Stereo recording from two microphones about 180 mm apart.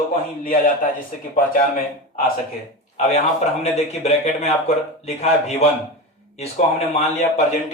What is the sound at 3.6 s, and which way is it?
A man's voice, 35° left (ahead or behind).